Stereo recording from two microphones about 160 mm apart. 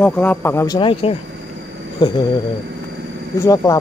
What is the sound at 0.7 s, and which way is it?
Speech, 30° left (ahead or behind).